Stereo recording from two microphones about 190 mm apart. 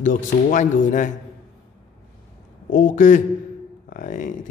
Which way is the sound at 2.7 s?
45° left (ahead or behind).